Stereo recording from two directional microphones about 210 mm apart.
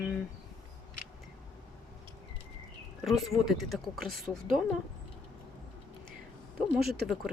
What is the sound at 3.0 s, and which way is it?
Speech, centre (ahead or behind).